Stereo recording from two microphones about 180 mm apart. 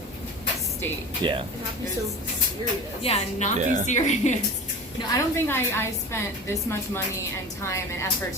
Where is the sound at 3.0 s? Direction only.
35° left (ahead or behind).